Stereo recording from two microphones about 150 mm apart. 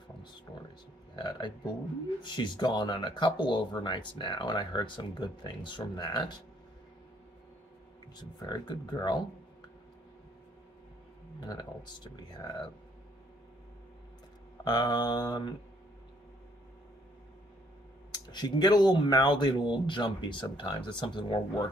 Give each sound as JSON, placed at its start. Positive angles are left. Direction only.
{"t": 0.5, "sound": "speech", "side_deg": 30}
{"t": 8.2, "sound": "speech", "side_deg": 30}
{"t": 11.3, "sound": "speech", "side_deg": 30}
{"t": 14.6, "sound": "speech", "side_deg": 30}
{"t": 18.1, "sound": "speech", "side_deg": 30}